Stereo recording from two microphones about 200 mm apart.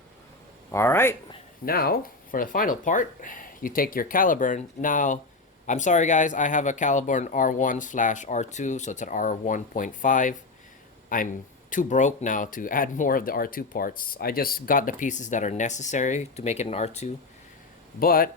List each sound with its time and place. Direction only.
0.7 s speech: 10° left (ahead or behind)
1.6 s speech: 50° left (ahead or behind); by 17.1 s 30° left (ahead or behind)
18.0 s speech: 45° left (ahead or behind)